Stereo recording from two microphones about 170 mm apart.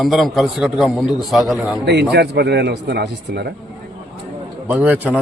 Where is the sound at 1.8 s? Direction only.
80° right.